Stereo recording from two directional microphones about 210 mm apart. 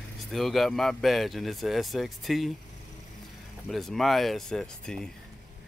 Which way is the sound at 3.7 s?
Centre (ahead or behind).